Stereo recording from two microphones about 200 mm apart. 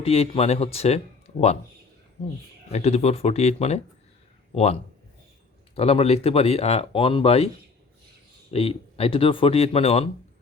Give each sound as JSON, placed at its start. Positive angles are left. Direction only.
{"t": 0.0, "sound": "speech", "side_deg": 30}
{"t": 2.7, "sound": "speech", "side_deg": 30}